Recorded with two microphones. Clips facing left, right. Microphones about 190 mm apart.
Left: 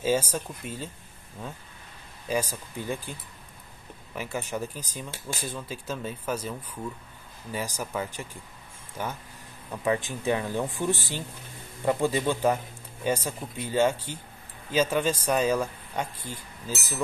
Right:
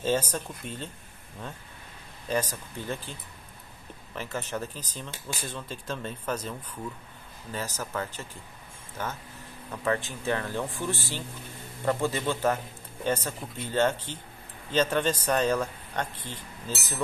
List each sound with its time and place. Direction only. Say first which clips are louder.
0.0 s speech: left 2 dB; 10° left (ahead or behind)
2.2 s speech: left 1 dB; 10° left (ahead or behind)